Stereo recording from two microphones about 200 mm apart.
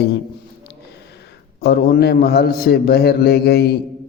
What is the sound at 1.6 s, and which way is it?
A man's voice, 55° left (ahead or behind).